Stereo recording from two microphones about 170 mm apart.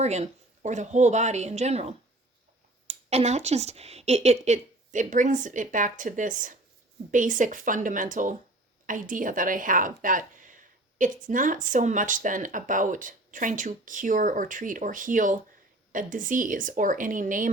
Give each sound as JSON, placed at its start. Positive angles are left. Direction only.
{"t": 0.0, "sound": "a woman's voice", "side_deg": -40}